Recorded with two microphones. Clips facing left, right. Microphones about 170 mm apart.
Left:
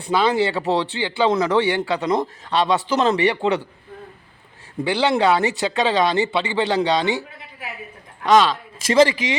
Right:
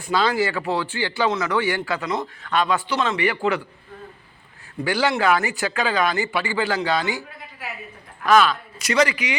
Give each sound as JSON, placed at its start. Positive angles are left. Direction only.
{"t": 0.0, "sound": "a man's voice", "side_deg": 25}
{"t": 4.8, "sound": "speech", "side_deg": 25}
{"t": 8.3, "sound": "speech", "side_deg": 25}